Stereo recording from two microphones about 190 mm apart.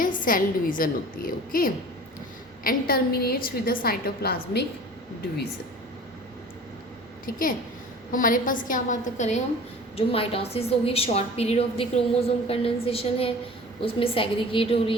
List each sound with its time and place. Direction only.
0.0 s a woman's voice: 45° left (ahead or behind)
8.1 s a woman's voice: 45° left (ahead or behind); by 14.9 s 30° left (ahead or behind)